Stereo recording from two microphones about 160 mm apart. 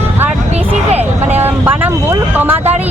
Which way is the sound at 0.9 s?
40° right (ahead or behind).